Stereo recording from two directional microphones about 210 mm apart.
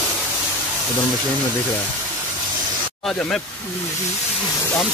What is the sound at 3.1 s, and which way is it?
Speech, centre (ahead or behind).